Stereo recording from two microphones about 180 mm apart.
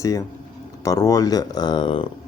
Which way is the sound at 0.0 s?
20° left (ahead or behind).